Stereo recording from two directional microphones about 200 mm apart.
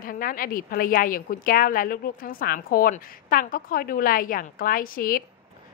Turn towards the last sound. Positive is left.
turn(degrees=45)  # may be behind; listen again after turning